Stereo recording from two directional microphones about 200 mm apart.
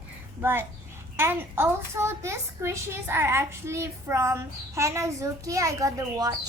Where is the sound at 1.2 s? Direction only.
10° right (ahead or behind).